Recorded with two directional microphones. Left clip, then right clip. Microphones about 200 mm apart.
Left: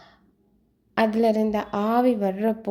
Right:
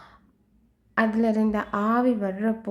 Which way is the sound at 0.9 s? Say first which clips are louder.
Left 3 dB; 15° left (ahead or behind).